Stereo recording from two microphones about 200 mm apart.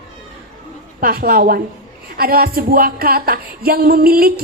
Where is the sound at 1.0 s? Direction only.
50° right (ahead or behind).